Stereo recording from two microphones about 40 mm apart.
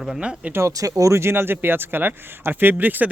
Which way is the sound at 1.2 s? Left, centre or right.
Right.